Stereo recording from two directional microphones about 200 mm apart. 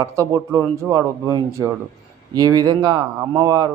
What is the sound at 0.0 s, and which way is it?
Speech, 15° right (ahead or behind).